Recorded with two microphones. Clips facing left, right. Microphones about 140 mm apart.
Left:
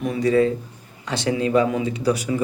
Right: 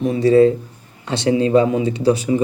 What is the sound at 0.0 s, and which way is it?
A man's voice, 30° right (ahead or behind).